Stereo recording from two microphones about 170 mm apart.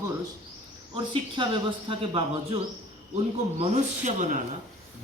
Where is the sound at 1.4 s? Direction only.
30° right (ahead or behind).